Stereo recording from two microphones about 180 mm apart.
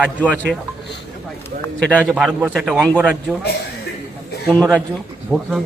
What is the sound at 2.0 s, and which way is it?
A man's voice, 5° right (ahead or behind).